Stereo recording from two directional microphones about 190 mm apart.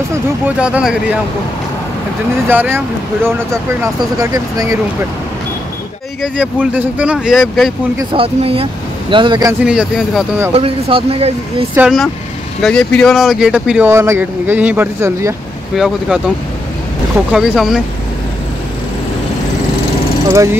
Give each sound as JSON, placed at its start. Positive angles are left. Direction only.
{"t": 0.6, "sound": "speech", "side_deg": -5}
{"t": 2.4, "sound": "speech", "side_deg": -10}
{"t": 3.8, "sound": "speech", "side_deg": -20}
{"t": 6.2, "sound": "speech", "side_deg": -5}
{"t": 8.0, "sound": "speech", "side_deg": -25}
{"t": 9.7, "sound": "speech", "side_deg": -5}
{"t": 10.5, "sound": "speech", "side_deg": -30}
{"t": 11.7, "sound": "speech", "side_deg": -5}
{"t": 15.7, "sound": "speech", "side_deg": 0}
{"t": 17.3, "sound": "speech", "side_deg": -5}